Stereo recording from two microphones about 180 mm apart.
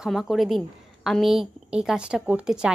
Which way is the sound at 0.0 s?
Centre (ahead or behind).